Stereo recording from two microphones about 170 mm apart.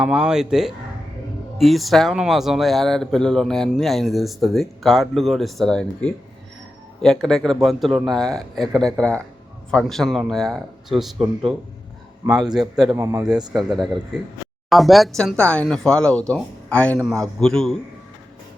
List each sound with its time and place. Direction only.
0.0 s speech: 5° right (ahead or behind)
12.9 s speech: 15° right (ahead or behind)
13.5 s speech: centre (ahead or behind)